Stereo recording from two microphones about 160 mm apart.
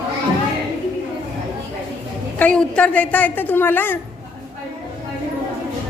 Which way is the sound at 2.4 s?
5° left (ahead or behind).